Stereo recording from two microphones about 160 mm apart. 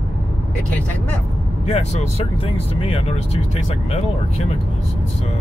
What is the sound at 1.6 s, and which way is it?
Speech, 40° left (ahead or behind).